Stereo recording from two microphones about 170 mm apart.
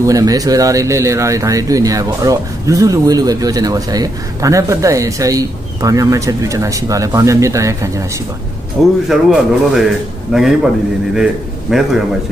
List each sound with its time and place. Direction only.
0.0 s speech: 20° right (ahead or behind)
9.1 s a man's voice: centre (ahead or behind)
11.7 s a man's voice: centre (ahead or behind)